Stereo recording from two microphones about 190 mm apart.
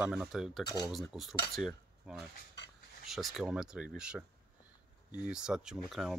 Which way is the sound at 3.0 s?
Centre (ahead or behind).